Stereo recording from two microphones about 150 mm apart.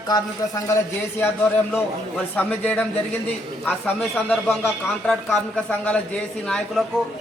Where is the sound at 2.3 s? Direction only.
10° left (ahead or behind).